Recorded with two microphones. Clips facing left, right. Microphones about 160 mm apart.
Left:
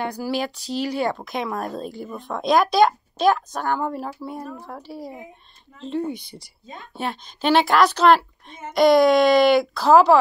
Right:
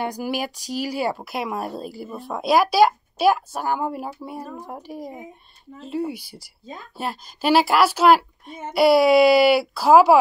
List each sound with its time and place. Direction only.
0.0 s speech: 10° right (ahead or behind)
5.8 s speech: 5° right (ahead or behind)